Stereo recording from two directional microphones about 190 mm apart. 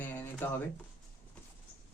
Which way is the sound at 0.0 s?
10° left (ahead or behind).